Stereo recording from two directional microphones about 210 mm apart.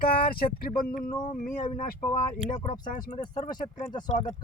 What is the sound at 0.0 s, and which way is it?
Speech, 45° left (ahead or behind).